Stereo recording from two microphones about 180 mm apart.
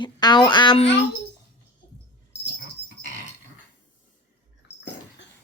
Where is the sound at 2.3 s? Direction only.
75° left (ahead or behind).